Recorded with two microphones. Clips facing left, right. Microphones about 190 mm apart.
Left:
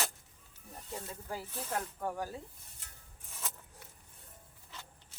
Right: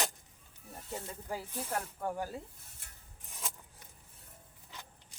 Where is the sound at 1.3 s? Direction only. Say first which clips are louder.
Right 1 dB; 10° right (ahead or behind).